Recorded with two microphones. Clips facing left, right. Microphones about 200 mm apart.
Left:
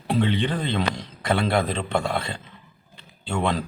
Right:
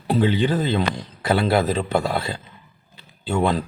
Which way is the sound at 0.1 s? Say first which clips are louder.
Right 4 dB; 5° right (ahead or behind).